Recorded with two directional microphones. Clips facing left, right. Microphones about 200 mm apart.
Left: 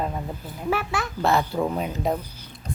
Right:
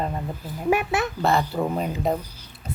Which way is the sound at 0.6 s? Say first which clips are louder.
Right 4 dB; 20° right (ahead or behind).